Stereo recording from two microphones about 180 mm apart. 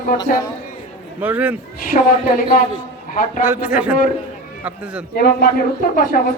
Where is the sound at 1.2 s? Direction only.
10° right (ahead or behind).